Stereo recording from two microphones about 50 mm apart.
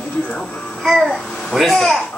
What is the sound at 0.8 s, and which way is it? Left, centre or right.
A child's voice, centre.